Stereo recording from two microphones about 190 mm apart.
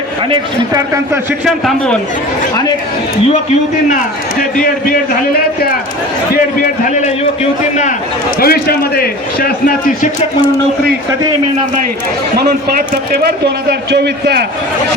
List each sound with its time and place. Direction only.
0.3 s a man's voice: 20° right (ahead or behind)
1.5 s a man's voice: 5° left (ahead or behind)
6.3 s a man's voice: 45° left (ahead or behind)
8.4 s a man's voice: 50° left (ahead or behind)
12.9 s a man's voice: 55° right (ahead or behind)